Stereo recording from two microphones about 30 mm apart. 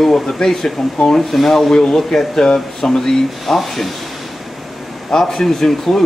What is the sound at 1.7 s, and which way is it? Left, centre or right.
Speech, left.